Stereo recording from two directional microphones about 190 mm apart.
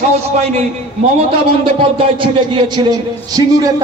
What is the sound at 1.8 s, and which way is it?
A man's voice, 25° right (ahead or behind).